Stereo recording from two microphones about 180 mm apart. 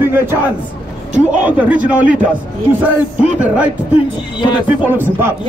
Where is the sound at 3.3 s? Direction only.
5° right (ahead or behind).